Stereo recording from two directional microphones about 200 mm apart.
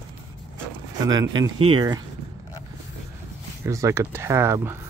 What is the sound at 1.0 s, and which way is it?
Speech, 20° right (ahead or behind).